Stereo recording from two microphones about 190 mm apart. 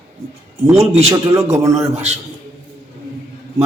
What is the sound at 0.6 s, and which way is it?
Speech, 15° right (ahead or behind).